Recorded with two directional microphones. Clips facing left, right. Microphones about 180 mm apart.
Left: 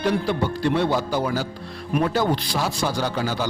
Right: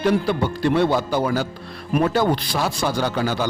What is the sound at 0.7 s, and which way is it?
A man's voice, 60° right (ahead or behind).